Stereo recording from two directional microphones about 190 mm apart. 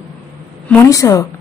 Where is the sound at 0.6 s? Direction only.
15° left (ahead or behind).